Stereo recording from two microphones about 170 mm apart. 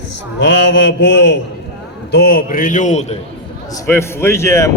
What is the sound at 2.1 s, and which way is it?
A man's voice, 65° left (ahead or behind).